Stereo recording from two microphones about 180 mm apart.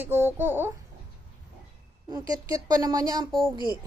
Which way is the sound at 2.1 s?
20° right (ahead or behind).